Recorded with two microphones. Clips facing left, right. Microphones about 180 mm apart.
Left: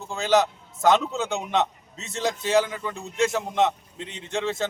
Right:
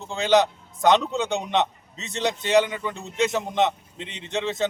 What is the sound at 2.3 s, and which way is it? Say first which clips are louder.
Speech: right 2 dB; centre (ahead or behind).